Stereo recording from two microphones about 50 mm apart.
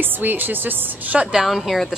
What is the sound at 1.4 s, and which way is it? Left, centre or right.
Speech, centre.